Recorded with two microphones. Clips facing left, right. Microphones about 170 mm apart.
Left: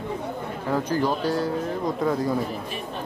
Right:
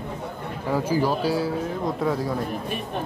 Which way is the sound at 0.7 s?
5° right (ahead or behind).